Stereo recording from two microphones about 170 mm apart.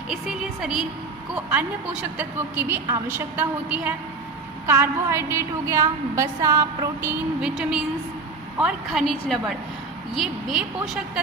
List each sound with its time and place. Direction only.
0.1 s a woman's voice: centre (ahead or behind)